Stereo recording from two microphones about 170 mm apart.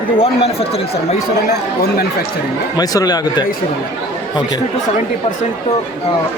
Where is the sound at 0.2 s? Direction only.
35° left (ahead or behind).